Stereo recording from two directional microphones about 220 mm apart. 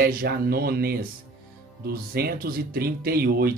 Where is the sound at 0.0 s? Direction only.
40° right (ahead or behind).